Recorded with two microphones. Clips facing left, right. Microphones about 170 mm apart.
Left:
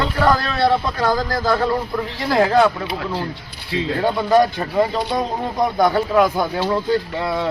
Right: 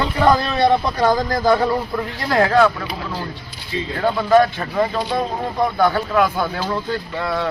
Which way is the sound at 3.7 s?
80° left.